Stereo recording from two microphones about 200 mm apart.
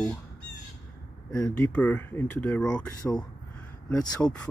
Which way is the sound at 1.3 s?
10° left (ahead or behind).